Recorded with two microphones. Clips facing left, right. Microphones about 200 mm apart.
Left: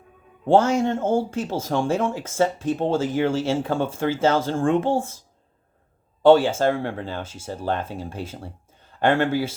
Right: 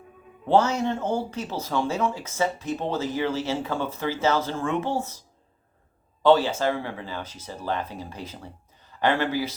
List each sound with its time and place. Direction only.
0.4 s speech: 50° left (ahead or behind)
6.2 s speech: 50° left (ahead or behind)
8.9 s speech: 50° left (ahead or behind)